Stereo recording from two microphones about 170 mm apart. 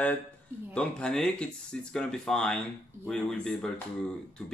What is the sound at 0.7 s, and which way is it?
Speech, 5° left (ahead or behind).